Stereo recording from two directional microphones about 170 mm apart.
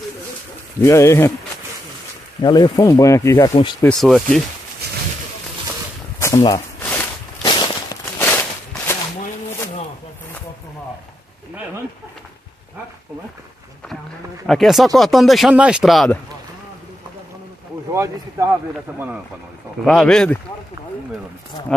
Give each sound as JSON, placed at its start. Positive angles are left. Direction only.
{"t": 0.8, "sound": "speech", "side_deg": 15}
{"t": 2.4, "sound": "speech", "side_deg": 25}
{"t": 4.0, "sound": "speech", "side_deg": 0}
{"t": 6.1, "sound": "a sound", "side_deg": 15}
{"t": 6.8, "sound": "walk", "side_deg": 10}
{"t": 7.4, "sound": "a sound", "side_deg": 25}
{"t": 8.2, "sound": "a sound", "side_deg": 10}
{"t": 14.4, "sound": "speech", "side_deg": 0}
{"t": 17.9, "sound": "speech", "side_deg": -20}
{"t": 19.8, "sound": "speech", "side_deg": 5}